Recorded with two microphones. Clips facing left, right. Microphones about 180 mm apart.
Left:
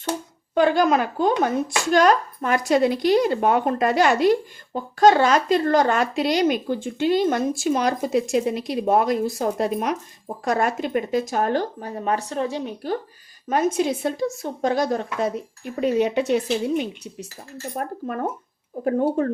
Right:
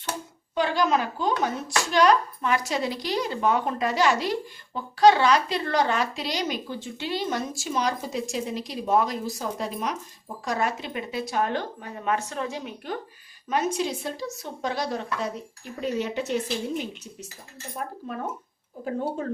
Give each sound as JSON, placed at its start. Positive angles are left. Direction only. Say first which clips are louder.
{"t": 0.5, "sound": "speech", "louder": "left 6 dB", "side_deg": 55}
{"t": 13.7, "sound": "speech", "louder": "left 7 dB", "side_deg": 55}
{"t": 15.8, "sound": "speech", "louder": "left 8 dB", "side_deg": 65}
{"t": 17.7, "sound": "speech", "louder": "left 5 dB", "side_deg": 55}